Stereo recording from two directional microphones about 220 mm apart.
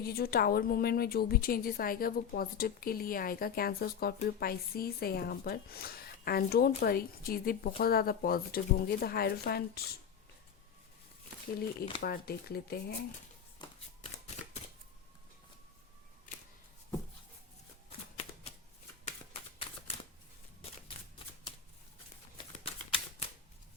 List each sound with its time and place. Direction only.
0.0 s a woman's voice: 45° left (ahead or behind)
12.0 s a woman's voice: 45° left (ahead or behind)
13.6 s shuffling cards: 20° left (ahead or behind)
19.0 s a sound: 25° left (ahead or behind)
22.5 s shuffling cards: 25° left (ahead or behind)